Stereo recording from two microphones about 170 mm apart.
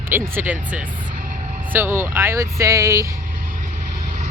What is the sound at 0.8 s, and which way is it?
Vehicle, 50° right (ahead or behind).